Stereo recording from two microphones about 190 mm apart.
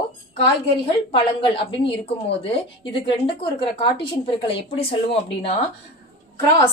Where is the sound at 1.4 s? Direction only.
25° left (ahead or behind).